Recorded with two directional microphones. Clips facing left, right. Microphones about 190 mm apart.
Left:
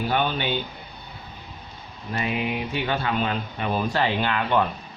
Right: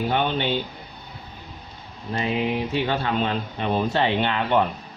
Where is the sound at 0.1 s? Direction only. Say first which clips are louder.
Even; 30° right (ahead or behind).